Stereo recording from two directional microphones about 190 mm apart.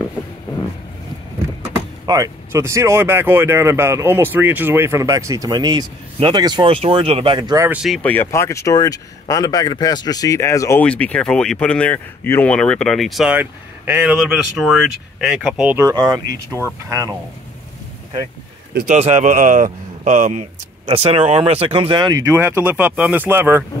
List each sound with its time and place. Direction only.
2.0 s speech: 20° right (ahead or behind)
7.7 s speech: 5° right (ahead or behind)
8.0 s speech: 10° left (ahead or behind); by 17.1 s 15° right (ahead or behind)
18.9 s speech: 35° right (ahead or behind); by 23.6 s 10° right (ahead or behind)